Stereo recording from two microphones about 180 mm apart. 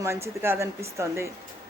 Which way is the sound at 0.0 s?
15° right (ahead or behind).